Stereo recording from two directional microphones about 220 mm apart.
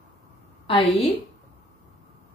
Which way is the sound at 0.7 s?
25° left (ahead or behind).